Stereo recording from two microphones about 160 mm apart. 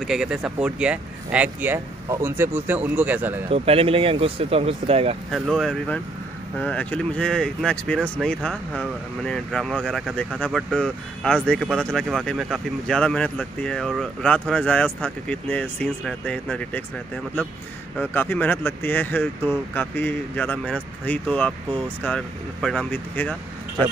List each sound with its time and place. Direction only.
0.0 s speech: 5° right (ahead or behind)
3.4 s speech: 35° right (ahead or behind)
5.3 s speech: centre (ahead or behind)